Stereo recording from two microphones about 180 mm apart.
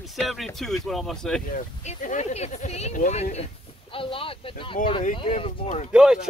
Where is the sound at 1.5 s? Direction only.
45° left (ahead or behind).